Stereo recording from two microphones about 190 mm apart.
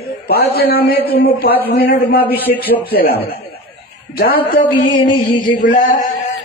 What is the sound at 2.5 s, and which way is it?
Speech, 45° left (ahead or behind).